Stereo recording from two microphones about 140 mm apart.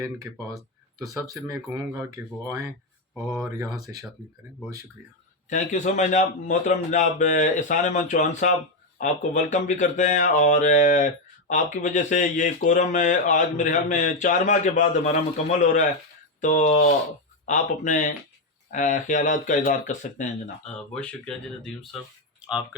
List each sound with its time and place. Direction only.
1.3 s speech: 25° right (ahead or behind)
3.2 s speech: centre (ahead or behind)
3.8 s speech: 25° right (ahead or behind)
5.5 s speech: 60° left (ahead or behind)
20.7 s speech: 5° left (ahead or behind)
22.4 s a sound: 5° right (ahead or behind)